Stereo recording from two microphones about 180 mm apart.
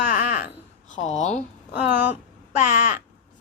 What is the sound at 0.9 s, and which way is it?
Speech, 40° left (ahead or behind).